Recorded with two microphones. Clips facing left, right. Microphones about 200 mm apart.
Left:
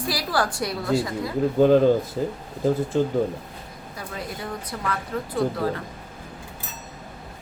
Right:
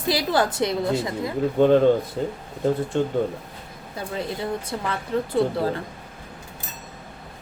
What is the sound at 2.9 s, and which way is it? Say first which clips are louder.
Speech: left 1 dB; centre (ahead or behind).